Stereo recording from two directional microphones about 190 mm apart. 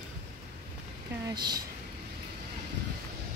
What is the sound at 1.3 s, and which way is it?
Speech, 20° right (ahead or behind).